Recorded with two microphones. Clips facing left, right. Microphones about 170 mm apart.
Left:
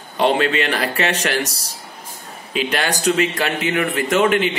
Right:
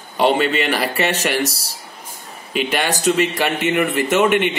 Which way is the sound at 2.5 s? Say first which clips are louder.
Right 1 dB; centre (ahead or behind).